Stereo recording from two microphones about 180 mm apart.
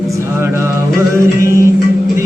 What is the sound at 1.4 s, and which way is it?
Music, 15° right (ahead or behind).